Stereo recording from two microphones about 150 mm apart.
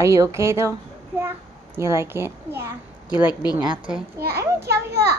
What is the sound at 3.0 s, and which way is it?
Speech, 30° left (ahead or behind).